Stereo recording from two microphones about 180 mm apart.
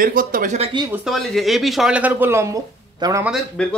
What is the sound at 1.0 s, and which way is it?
Speech, centre (ahead or behind).